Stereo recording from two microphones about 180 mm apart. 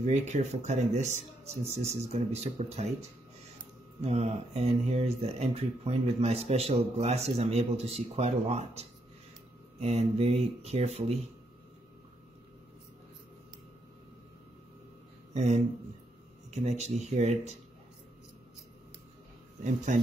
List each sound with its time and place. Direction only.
0.0 s speech: 40° right (ahead or behind)
4.0 s speech: 35° right (ahead or behind)
15.3 s speech: 40° right (ahead or behind)
19.6 s speech: 45° right (ahead or behind)